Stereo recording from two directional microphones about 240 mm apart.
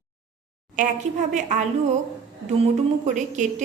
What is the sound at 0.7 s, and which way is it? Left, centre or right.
Speech, right.